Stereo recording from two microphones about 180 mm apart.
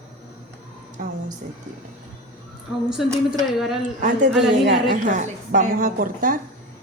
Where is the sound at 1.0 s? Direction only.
50° right (ahead or behind).